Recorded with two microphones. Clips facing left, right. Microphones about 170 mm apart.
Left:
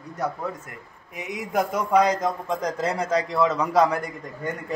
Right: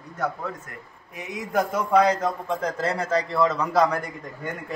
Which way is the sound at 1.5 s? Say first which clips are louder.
Even; centre (ahead or behind).